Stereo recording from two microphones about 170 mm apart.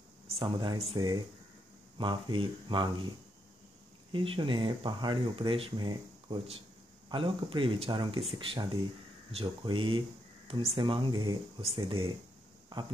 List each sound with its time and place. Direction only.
0.3 s speech: 30° right (ahead or behind)
4.1 s speech: 30° right (ahead or behind)